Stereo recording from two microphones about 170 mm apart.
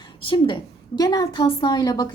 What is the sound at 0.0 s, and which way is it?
A woman's voice, 30° left (ahead or behind).